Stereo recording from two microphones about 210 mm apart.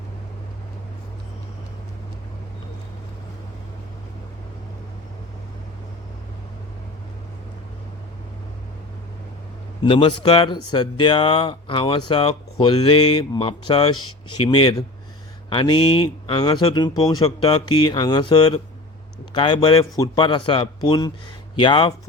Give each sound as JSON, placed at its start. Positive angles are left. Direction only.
{"t": 9.8, "sound": "speech", "side_deg": 25}
{"t": 13.9, "sound": "speech", "side_deg": 90}
{"t": 14.4, "sound": "speech", "side_deg": 20}